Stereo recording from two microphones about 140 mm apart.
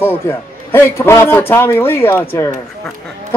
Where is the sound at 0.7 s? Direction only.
20° left (ahead or behind).